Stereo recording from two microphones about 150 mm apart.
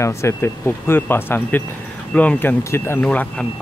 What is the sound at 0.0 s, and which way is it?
Speech, 20° left (ahead or behind).